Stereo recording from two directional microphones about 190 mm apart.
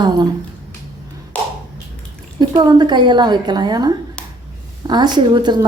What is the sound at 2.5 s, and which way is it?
A woman's voice, 25° right (ahead or behind).